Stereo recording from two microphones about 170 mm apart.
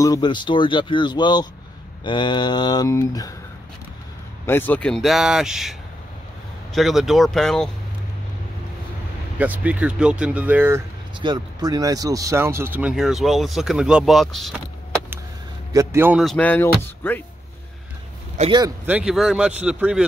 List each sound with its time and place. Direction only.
0.0 s speech: 25° left (ahead or behind)
4.5 s speech: 10° left (ahead or behind)
9.4 s speech: 10° right (ahead or behind)
11.1 s speech: 25° right (ahead or behind); by 14.5 s centre (ahead or behind)
15.7 s speech: 15° right (ahead or behind)
16.2 s speech: 5° left (ahead or behind)
18.4 s speech: 45° right (ahead or behind)
18.9 s speech: 5° right (ahead or behind)